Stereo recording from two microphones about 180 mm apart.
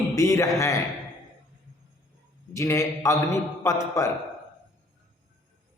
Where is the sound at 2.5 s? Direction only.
15° left (ahead or behind).